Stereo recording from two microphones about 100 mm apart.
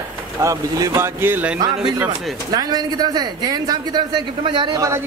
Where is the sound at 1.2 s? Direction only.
20° right (ahead or behind).